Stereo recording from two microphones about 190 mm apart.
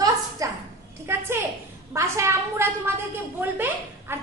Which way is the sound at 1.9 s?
15° right (ahead or behind).